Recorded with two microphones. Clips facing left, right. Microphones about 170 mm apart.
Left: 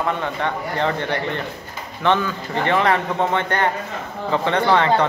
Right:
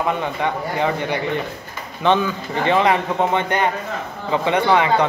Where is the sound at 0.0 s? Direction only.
15° right (ahead or behind).